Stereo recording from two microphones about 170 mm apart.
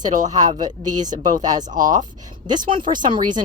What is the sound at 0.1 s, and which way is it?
Speech, 50° right (ahead or behind).